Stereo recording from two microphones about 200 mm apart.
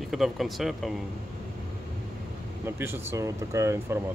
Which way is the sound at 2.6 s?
10° right (ahead or behind).